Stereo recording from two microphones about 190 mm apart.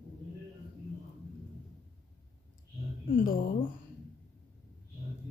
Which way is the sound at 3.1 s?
50° left (ahead or behind).